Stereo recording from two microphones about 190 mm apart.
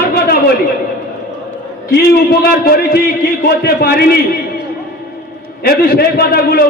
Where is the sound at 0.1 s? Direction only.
55° left (ahead or behind).